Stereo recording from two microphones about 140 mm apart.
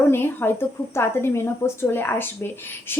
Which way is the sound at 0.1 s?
15° left (ahead or behind).